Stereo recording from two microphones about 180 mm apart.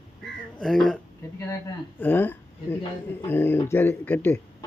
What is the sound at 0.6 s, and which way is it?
Speech, 5° left (ahead or behind).